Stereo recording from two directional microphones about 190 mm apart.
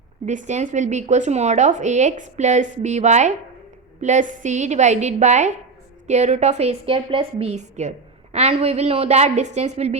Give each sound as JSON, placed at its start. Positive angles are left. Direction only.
{"t": 0.3, "sound": "a woman's voice", "side_deg": -40}